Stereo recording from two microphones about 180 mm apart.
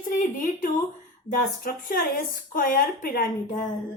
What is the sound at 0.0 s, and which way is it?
Speech, 45° left (ahead or behind).